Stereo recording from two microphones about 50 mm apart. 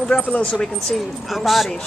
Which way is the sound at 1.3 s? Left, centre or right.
Centre.